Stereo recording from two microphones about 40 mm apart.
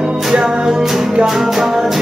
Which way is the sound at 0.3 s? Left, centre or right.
Centre.